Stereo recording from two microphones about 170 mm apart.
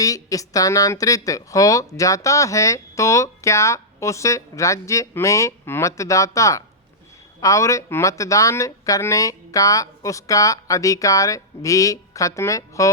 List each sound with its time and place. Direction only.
0.0 s speech: 20° left (ahead or behind)